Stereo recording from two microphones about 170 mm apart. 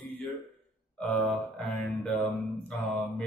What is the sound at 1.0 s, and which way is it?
Mantra, 5° left (ahead or behind).